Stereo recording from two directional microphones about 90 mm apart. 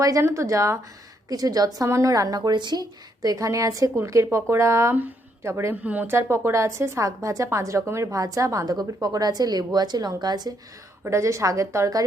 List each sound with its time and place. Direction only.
0.0 s a woman's voice: 40° right (ahead or behind)
5.8 s speech: 15° right (ahead or behind)
6.1 s a woman's voice: 30° right (ahead or behind); by 10.5 s 50° right (ahead or behind)
11.0 s a woman's voice: 35° right (ahead or behind)